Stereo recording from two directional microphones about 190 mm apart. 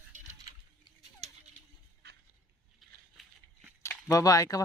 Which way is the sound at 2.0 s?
55° right (ahead or behind).